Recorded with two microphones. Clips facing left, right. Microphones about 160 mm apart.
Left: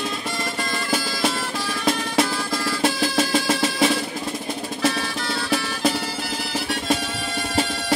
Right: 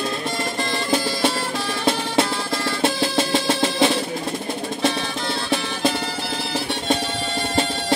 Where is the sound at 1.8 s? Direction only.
25° right (ahead or behind).